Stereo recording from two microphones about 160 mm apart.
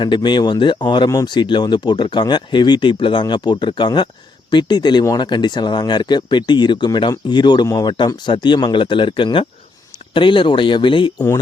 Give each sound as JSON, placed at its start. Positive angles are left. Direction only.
{"t": 0.0, "sound": "speech", "side_deg": 30}